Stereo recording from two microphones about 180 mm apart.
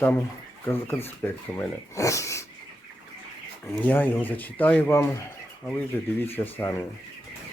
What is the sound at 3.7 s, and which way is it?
Speech, 10° left (ahead or behind).